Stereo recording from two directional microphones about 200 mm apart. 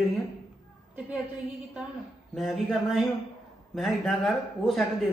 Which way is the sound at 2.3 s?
Centre (ahead or behind).